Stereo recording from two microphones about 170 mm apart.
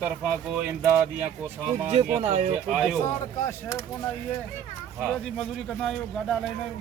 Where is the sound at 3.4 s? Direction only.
15° left (ahead or behind).